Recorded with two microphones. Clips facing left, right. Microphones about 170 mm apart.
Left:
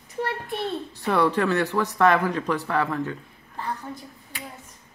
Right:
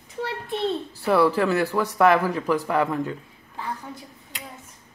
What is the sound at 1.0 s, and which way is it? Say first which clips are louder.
Speech: right 2 dB; 5° right (ahead or behind).